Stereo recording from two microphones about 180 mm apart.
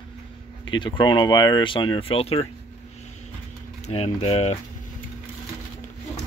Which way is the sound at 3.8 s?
35° left (ahead or behind).